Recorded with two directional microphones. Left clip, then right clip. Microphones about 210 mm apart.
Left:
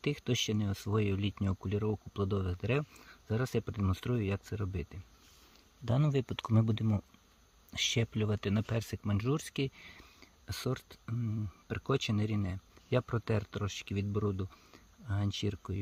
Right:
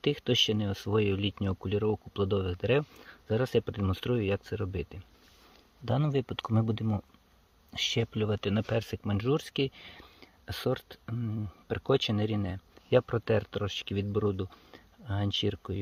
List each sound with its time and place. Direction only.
0.0 s speech: 40° left (ahead or behind)